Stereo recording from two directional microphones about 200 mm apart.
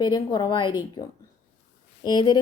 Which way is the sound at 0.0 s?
20° left (ahead or behind).